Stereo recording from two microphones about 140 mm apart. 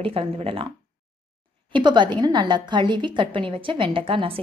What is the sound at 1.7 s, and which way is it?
A woman's voice, 35° right (ahead or behind).